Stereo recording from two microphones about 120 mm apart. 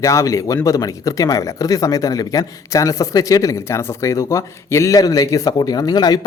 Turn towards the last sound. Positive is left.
turn(degrees=35)  # may be behind; listen again after turning